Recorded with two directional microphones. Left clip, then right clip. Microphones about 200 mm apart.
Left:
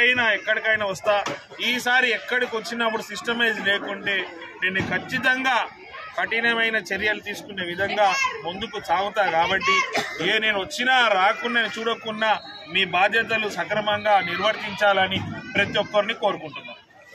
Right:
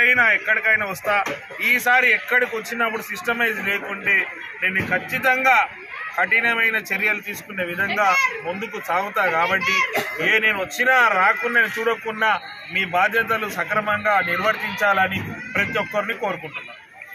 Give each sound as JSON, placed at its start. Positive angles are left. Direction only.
{"t": 0.0, "sound": "a man's voice", "side_deg": 25}